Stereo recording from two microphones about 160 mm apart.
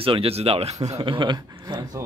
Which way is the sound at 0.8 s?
35° right (ahead or behind).